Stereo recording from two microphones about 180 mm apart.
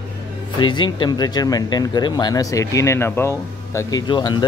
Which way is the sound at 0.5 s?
25° left (ahead or behind).